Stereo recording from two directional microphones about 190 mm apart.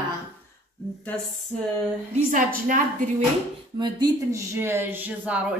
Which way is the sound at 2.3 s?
45° right (ahead or behind).